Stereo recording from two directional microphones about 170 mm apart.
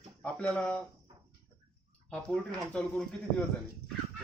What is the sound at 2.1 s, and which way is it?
Speech, 5° left (ahead or behind).